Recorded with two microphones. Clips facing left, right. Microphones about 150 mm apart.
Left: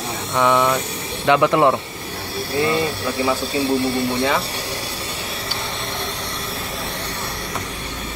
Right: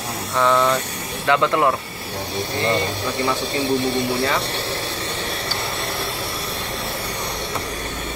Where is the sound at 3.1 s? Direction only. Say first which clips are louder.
Left 1 dB; 10° left (ahead or behind).